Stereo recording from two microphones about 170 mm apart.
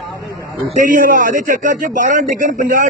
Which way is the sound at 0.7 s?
50° right (ahead or behind).